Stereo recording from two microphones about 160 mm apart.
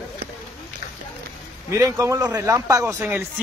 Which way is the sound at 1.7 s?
20° right (ahead or behind).